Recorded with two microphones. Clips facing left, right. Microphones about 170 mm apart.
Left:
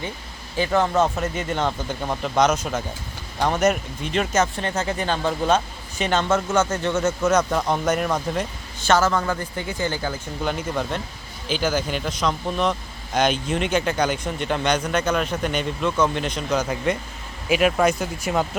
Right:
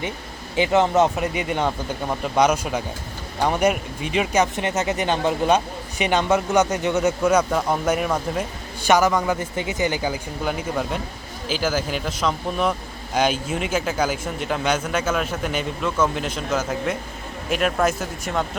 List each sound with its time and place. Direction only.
0.5 s speech: 20° right (ahead or behind); by 18.4 s centre (ahead or behind)